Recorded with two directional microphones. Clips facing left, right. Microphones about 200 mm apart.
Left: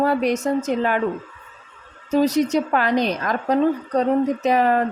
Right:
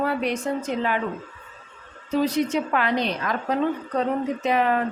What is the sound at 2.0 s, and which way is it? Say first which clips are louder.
Speech: left 4 dB; 40° left (ahead or behind).